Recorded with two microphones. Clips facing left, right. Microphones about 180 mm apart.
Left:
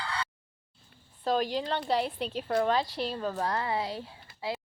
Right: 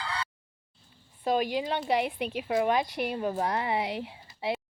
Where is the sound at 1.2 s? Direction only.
10° right (ahead or behind).